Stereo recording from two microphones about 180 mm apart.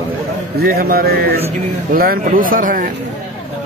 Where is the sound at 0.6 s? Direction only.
55° right (ahead or behind).